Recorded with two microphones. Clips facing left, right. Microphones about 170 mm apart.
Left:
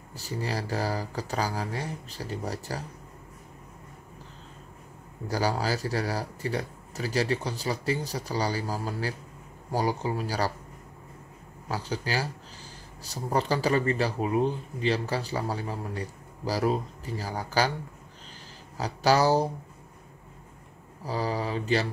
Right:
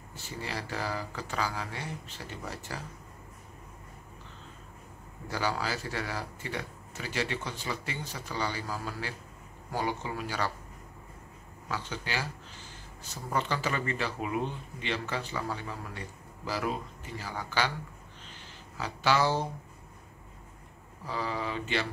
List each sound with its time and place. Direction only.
0.1 s speech: 35° left (ahead or behind)
5.3 s speech: 40° left (ahead or behind)
11.7 s speech: 35° left (ahead or behind)
18.8 s speech: 40° left (ahead or behind)
21.0 s speech: 35° left (ahead or behind)